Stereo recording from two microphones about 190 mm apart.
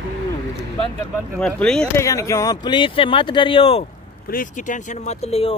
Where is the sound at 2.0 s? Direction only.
15° left (ahead or behind).